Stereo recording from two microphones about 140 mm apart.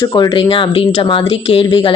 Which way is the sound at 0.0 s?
30° left (ahead or behind).